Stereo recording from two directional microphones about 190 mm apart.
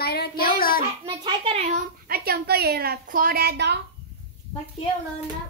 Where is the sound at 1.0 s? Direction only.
25° right (ahead or behind); by 3.7 s 60° right (ahead or behind).